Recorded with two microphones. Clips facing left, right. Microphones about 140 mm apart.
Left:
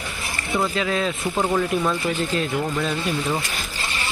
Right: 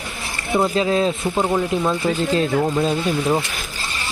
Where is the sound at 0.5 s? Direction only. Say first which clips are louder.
Right 5 dB; 30° right (ahead or behind).